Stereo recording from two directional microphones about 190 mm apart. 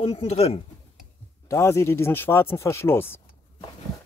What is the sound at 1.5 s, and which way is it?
Speech, 15° left (ahead or behind).